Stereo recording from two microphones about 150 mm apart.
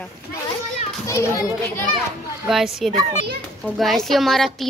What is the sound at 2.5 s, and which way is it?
A child's voice, 5° right (ahead or behind).